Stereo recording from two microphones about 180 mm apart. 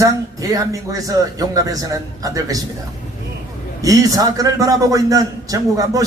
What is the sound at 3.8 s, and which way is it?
Speech, 20° right (ahead or behind).